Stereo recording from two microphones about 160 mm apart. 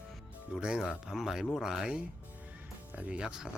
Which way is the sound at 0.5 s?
Centre (ahead or behind).